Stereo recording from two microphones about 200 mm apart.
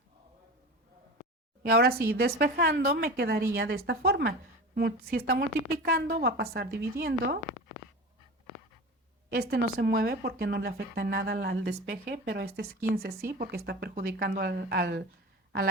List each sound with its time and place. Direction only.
1.7 s a woman's voice: 50° right (ahead or behind)
9.3 s a woman's voice: 50° right (ahead or behind)